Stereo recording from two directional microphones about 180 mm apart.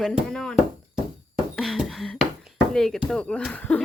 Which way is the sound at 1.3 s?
Centre (ahead or behind).